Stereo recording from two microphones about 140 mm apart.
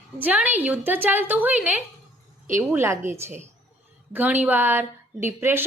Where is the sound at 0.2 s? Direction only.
10° right (ahead or behind).